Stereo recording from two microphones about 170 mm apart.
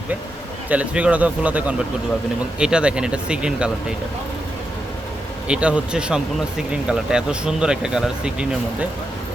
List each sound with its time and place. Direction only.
0.7 s speech: 5° right (ahead or behind)
5.5 s speech: 5° right (ahead or behind)